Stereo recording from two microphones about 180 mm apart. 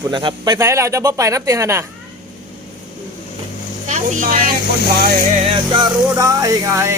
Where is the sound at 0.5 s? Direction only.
15° right (ahead or behind).